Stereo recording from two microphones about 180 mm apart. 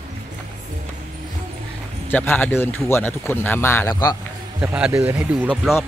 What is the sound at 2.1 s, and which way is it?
A man's voice, 10° left (ahead or behind).